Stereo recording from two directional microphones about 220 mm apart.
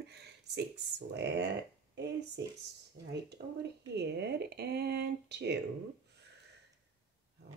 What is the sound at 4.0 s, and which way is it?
Speech, 50° right (ahead or behind).